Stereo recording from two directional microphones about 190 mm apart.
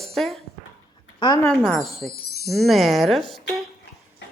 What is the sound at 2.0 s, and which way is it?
Chime, 55° left (ahead or behind).